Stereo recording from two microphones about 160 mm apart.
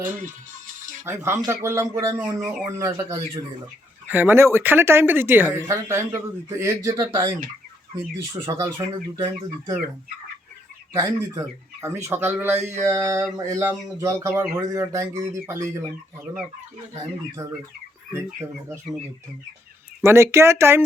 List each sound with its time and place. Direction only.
1.0 s speech: 15° right (ahead or behind)
8.3 s speech: 25° right (ahead or behind)
10.9 s speech: 20° right (ahead or behind)
20.0 s speech: 15° right (ahead or behind)